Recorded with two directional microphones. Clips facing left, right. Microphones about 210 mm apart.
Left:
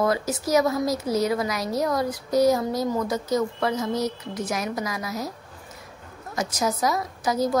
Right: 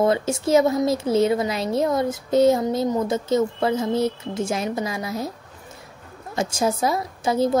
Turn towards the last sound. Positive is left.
turn(degrees=-25)  # may be behind; listen again after turning